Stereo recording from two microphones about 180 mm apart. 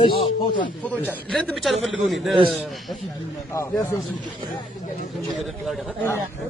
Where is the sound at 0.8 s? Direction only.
10° left (ahead or behind).